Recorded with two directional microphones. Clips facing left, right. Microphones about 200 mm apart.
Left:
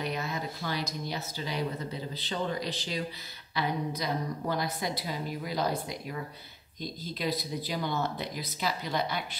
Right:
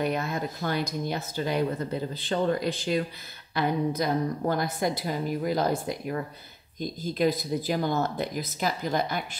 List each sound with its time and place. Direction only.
0.0 s speech: 50° right (ahead or behind)